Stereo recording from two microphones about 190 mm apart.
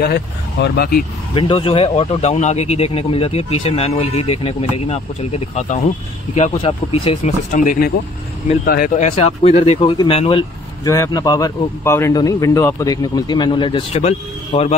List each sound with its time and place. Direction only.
0.0 s speech: 55° left (ahead or behind)
1.3 s speech: 30° left (ahead or behind)
10.9 s speech: 20° left (ahead or behind); by 14.8 s 35° left (ahead or behind)